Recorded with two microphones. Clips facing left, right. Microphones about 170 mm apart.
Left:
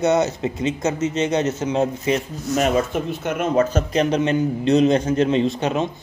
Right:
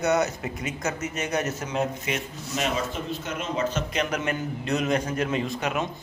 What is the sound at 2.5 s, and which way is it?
Speech, 55° left (ahead or behind).